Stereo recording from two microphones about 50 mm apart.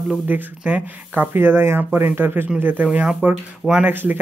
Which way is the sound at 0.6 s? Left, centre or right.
Right.